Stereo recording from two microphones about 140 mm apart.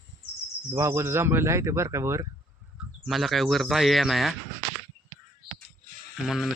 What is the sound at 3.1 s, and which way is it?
Speech, centre (ahead or behind).